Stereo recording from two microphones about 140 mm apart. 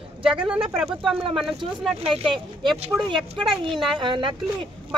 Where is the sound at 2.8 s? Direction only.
40° right (ahead or behind).